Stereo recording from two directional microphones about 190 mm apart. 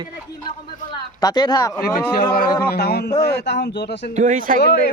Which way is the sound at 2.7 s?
55° left (ahead or behind).